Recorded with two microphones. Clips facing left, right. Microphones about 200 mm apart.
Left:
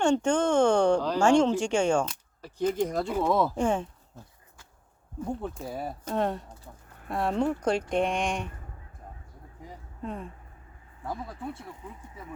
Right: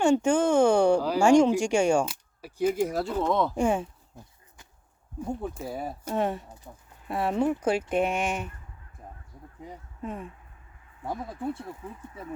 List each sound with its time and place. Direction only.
0.0 s speech: 10° right (ahead or behind)
3.1 s speech: 5° left (ahead or behind)
3.5 s a sound: 10° right (ahead or behind)
5.4 s speech: 5° right (ahead or behind)
10.0 s speech: 5° right (ahead or behind)
11.0 s speech: 25° right (ahead or behind)